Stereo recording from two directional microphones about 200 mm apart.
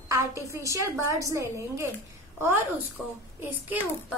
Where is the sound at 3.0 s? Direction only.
5° left (ahead or behind).